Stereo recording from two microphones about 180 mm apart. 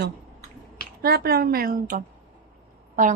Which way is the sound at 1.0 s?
60° right (ahead or behind).